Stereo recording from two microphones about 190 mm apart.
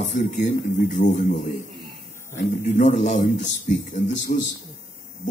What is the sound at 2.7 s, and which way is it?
A man's voice, 40° left (ahead or behind).